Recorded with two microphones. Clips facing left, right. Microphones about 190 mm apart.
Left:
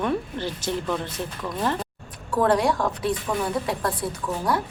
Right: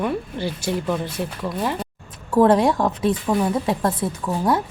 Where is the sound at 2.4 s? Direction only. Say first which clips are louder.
Right 3 dB; 25° right (ahead or behind).